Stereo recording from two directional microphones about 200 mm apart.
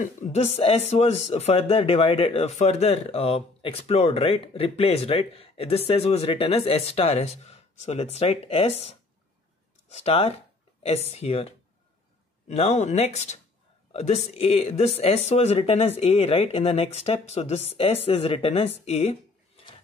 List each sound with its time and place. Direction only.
0.0 s speech: 35° left (ahead or behind)